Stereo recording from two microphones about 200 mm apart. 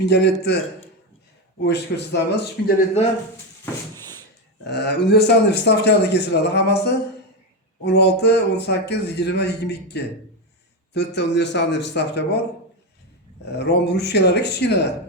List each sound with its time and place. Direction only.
0.0 s a man's voice: 55° left (ahead or behind)
1.6 s a man's voice: 55° left (ahead or behind)
4.6 s a man's voice: 55° left (ahead or behind)
13.4 s a man's voice: 55° left (ahead or behind)